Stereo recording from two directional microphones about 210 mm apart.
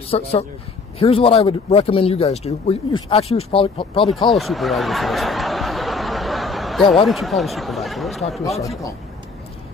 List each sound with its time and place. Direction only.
0.1 s speech: 30° left (ahead or behind)
4.1 s snicker: centre (ahead or behind)
7.1 s speech: centre (ahead or behind)